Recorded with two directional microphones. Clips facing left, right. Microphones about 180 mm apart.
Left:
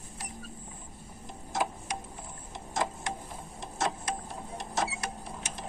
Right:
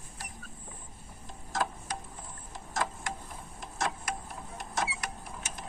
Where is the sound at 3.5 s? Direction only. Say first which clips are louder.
Left 2 dB; 25° left (ahead or behind).